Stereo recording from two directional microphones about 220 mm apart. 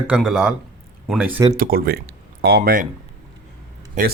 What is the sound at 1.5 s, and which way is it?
Speech, 40° right (ahead or behind).